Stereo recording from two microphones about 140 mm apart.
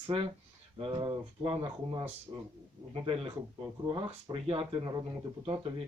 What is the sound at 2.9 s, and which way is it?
Speech, 40° right (ahead or behind).